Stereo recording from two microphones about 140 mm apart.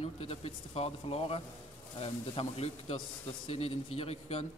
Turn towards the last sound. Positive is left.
turn(degrees=45)  # may be behind; listen again after turning